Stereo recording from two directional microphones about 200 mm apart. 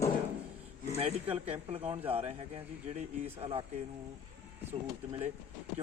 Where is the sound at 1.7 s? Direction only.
30° right (ahead or behind).